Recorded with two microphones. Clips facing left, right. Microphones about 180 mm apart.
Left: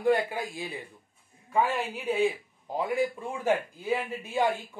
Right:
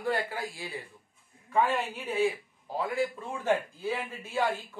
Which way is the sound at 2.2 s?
20° left (ahead or behind).